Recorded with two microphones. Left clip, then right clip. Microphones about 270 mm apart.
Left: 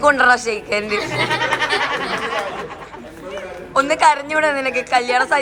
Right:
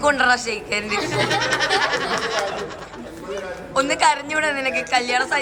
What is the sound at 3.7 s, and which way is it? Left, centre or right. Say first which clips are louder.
A woman's voice: left 4 dB; centre.